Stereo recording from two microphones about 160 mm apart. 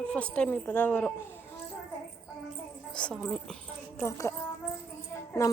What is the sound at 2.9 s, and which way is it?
A woman's voice, 5° left (ahead or behind).